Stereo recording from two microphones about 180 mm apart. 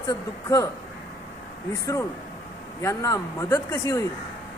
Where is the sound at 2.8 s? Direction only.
15° left (ahead or behind).